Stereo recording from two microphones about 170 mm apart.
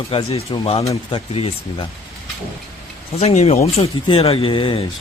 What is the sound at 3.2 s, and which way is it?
Speech, 40° left (ahead or behind).